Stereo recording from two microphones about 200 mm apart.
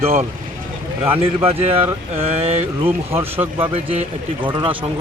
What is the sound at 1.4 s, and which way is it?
Speech, 30° right (ahead or behind).